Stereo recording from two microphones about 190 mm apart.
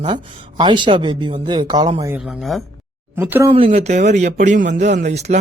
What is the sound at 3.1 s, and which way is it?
Speech, 10° right (ahead or behind).